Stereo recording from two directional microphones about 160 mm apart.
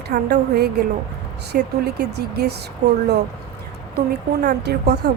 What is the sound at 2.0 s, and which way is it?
Speech, 90° right.